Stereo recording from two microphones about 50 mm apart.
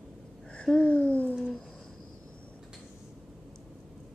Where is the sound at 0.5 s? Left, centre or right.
Centre.